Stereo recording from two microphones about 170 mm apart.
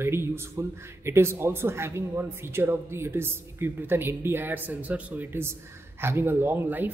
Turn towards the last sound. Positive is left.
turn(degrees=-10)  # may be behind; listen again after turning